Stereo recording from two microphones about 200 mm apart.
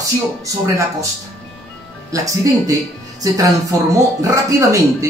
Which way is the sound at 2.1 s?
15° right (ahead or behind).